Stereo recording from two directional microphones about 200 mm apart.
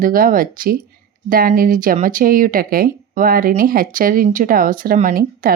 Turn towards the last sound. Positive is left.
turn(degrees=-45)  # may be behind; listen again after turning